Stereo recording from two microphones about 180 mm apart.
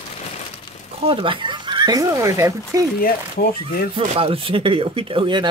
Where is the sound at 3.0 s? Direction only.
55° left (ahead or behind).